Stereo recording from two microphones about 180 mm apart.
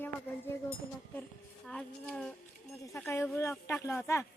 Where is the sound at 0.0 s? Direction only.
10° left (ahead or behind).